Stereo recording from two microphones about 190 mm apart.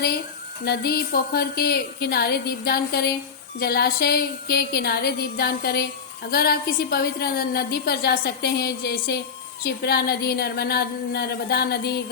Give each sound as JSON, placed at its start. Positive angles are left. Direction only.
{"t": 0.6, "sound": "a woman's voice", "side_deg": 55}